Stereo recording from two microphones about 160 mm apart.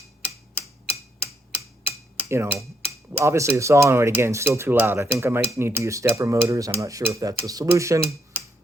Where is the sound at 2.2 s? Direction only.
15° right (ahead or behind).